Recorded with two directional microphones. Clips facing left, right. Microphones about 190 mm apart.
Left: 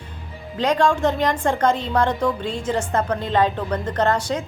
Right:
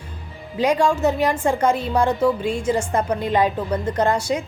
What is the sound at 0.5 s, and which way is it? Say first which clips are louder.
A woman's voice: right 1 dB; 10° right (ahead or behind).